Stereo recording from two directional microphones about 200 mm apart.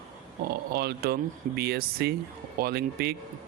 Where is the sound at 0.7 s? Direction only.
50° right (ahead or behind).